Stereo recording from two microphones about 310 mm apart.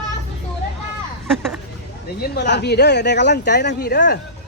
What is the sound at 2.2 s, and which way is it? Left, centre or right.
Speech, left.